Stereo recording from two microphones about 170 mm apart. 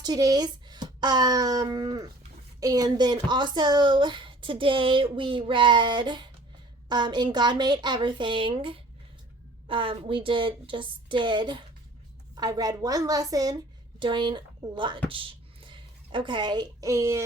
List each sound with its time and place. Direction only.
0.0 s a woman's voice: 25° right (ahead or behind)